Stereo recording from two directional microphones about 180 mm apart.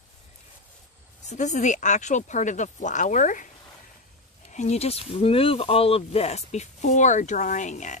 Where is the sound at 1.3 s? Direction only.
40° left (ahead or behind).